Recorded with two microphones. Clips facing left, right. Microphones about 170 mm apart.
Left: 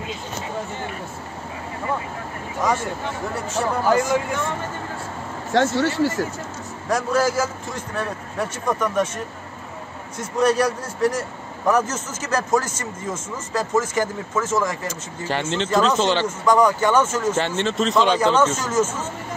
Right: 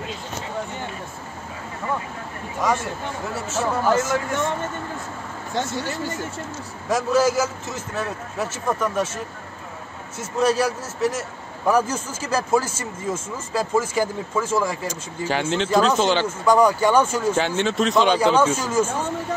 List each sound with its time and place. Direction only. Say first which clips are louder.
3.3 s a man's voice: even; 5° right (ahead or behind)
5.5 s speech: left 7 dB; 85° left
6.9 s a man's voice: right 1 dB; centre (ahead or behind)